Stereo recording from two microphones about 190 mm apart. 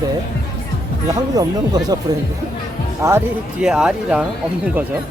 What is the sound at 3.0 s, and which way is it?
Speech, 15° right (ahead or behind).